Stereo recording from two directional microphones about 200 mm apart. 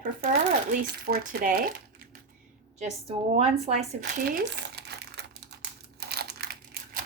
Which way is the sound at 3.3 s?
30° right (ahead or behind).